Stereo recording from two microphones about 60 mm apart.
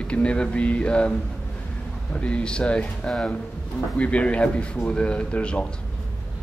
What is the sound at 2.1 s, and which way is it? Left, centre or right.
Speech, centre.